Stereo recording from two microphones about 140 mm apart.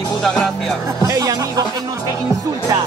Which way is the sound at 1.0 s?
25° right (ahead or behind).